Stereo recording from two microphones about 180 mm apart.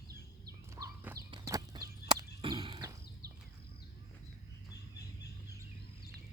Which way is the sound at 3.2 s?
60° right (ahead or behind).